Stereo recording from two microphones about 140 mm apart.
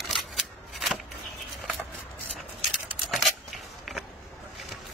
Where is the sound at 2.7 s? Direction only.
Centre (ahead or behind).